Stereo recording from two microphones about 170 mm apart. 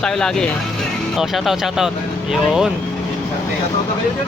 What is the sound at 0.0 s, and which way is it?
Speech, 5° left (ahead or behind).